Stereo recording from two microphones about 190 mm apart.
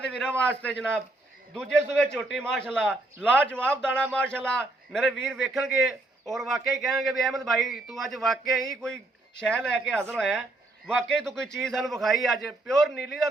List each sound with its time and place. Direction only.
0.0 s a man's voice: 5° left (ahead or behind)